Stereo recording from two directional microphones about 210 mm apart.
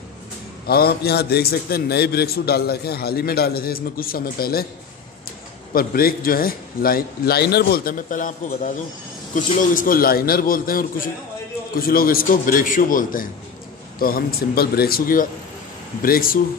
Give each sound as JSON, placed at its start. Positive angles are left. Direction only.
{"t": 0.7, "sound": "a man's voice", "side_deg": 50}
{"t": 5.7, "sound": "a man's voice", "side_deg": 45}
{"t": 9.5, "sound": "a man's voice", "side_deg": 40}